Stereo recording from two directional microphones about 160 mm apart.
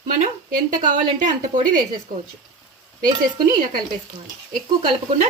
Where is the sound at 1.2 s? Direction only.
55° right (ahead or behind).